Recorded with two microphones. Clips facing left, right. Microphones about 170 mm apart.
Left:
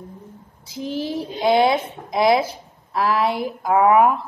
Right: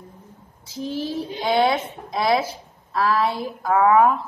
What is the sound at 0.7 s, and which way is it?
A woman's voice, 15° left (ahead or behind).